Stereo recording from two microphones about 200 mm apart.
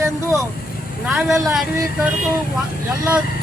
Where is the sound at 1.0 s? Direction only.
5° right (ahead or behind).